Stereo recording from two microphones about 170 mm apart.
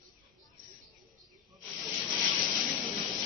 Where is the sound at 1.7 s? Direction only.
Centre (ahead or behind).